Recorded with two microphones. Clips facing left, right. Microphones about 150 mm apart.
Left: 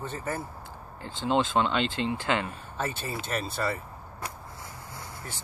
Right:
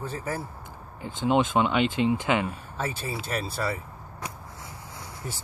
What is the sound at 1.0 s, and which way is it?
Speech, 15° right (ahead or behind).